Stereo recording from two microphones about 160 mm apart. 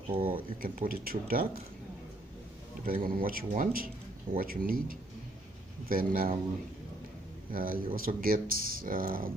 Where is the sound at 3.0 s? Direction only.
65° right (ahead or behind).